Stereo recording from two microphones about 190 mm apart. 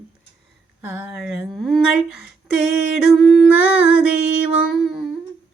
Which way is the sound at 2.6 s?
90° left.